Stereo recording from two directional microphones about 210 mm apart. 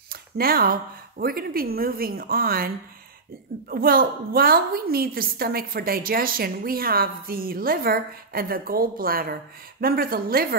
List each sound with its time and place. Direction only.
0.1 s a woman's voice: 45° right (ahead or behind)
3.7 s a woman's voice: 45° right (ahead or behind)